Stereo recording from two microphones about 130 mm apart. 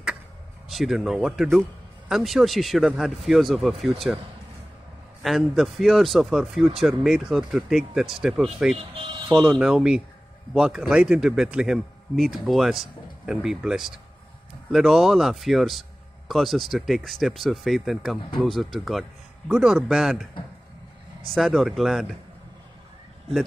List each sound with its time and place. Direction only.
0.7 s speech: centre (ahead or behind)
5.2 s speech: centre (ahead or behind)
8.7 s music: 50° right (ahead or behind)
9.3 s speech: centre (ahead or behind)
21.4 s speech: centre (ahead or behind)